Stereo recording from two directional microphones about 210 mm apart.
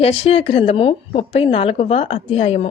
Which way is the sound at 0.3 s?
25° left (ahead or behind).